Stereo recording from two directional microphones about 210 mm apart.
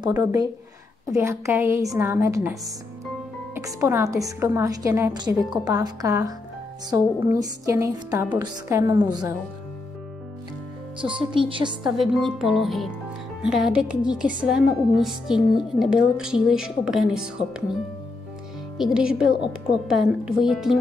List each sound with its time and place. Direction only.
0.1 s a woman's voice: 15° right (ahead or behind)
3.5 s a woman's voice: 15° right (ahead or behind)
11.4 s a woman's voice: 25° right (ahead or behind)
11.8 s a woman's voice: centre (ahead or behind)
18.9 s a woman's voice: 5° right (ahead or behind)